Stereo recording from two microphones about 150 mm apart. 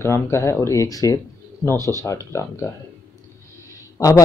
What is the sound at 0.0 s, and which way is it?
Speech, 20° left (ahead or behind).